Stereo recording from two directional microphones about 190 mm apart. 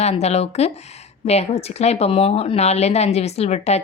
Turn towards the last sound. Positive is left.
turn(degrees=35)  # may be behind; listen again after turning